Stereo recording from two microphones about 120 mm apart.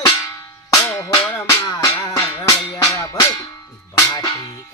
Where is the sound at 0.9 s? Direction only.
25° left (ahead or behind).